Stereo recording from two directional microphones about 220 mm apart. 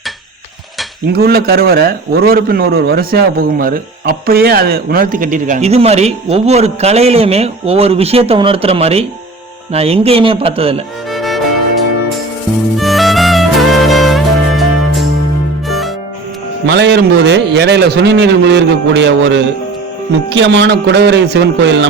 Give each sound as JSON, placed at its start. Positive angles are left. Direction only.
{"t": 1.1, "sound": "a man's voice", "side_deg": -45}
{"t": 11.1, "sound": "music", "side_deg": 0}
{"t": 12.7, "sound": "music", "side_deg": 0}
{"t": 16.6, "sound": "a man's voice", "side_deg": -55}